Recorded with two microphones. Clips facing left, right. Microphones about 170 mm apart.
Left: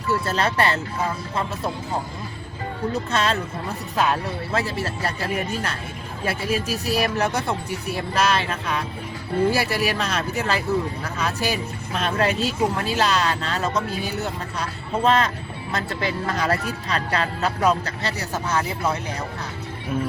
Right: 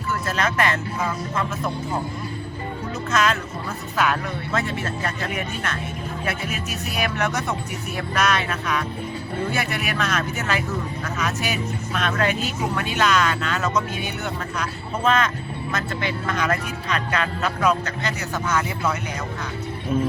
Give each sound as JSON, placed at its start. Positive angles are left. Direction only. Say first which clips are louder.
{"t": 0.1, "sound": "speech", "louder": "left 2 dB", "side_deg": 35}
{"t": 3.1, "sound": "speech", "louder": "right 6 dB", "side_deg": 35}